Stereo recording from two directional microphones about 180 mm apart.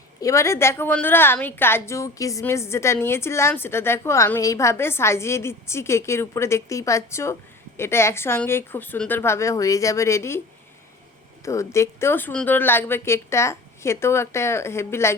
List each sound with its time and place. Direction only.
0.2 s a woman's voice: 15° left (ahead or behind)
11.4 s a woman's voice: 15° left (ahead or behind)